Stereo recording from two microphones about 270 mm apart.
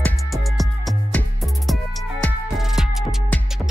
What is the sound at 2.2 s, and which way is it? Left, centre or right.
Music, centre.